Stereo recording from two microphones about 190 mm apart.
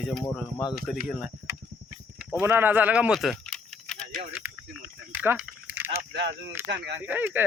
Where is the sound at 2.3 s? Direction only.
10° right (ahead or behind); by 4.1 s 5° left (ahead or behind).